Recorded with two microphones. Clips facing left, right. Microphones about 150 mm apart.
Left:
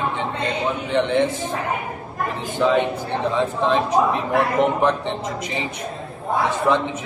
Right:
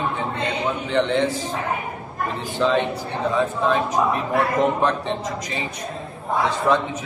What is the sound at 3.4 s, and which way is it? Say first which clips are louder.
A man's voice: even; 25° left (ahead or behind).